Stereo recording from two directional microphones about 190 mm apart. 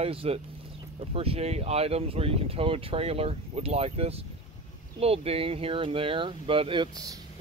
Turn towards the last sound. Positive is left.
turn(degrees=-25)  # may be behind; listen again after turning